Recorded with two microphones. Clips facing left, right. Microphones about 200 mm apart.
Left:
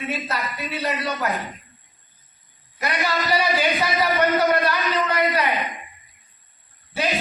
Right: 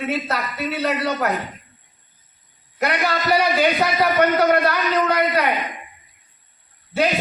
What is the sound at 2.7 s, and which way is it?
A man's voice, 60° right (ahead or behind).